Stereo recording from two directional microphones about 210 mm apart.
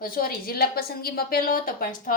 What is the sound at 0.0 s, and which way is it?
A woman's voice, 45° left (ahead or behind).